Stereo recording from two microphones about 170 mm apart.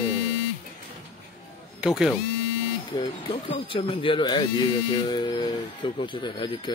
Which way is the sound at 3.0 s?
30° left (ahead or behind).